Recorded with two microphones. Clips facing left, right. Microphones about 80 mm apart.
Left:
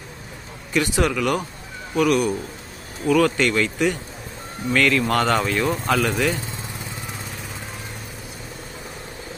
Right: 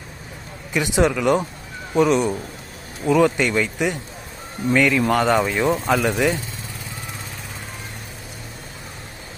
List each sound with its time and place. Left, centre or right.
0.7 s speech: centre